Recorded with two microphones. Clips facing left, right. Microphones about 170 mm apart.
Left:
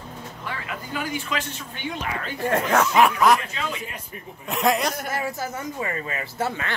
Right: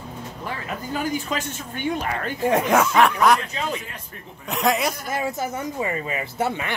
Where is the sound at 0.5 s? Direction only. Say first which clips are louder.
Right 3 dB; 40° right (ahead or behind).